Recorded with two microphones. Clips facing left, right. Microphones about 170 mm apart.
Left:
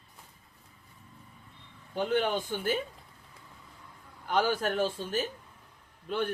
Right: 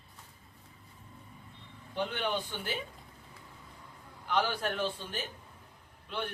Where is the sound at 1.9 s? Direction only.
45° left (ahead or behind).